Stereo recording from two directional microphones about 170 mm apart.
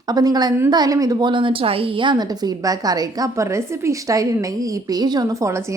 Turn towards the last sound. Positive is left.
turn(degrees=-15)  # may be behind; listen again after turning